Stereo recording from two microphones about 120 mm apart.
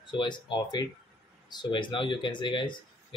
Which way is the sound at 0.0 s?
40° left (ahead or behind).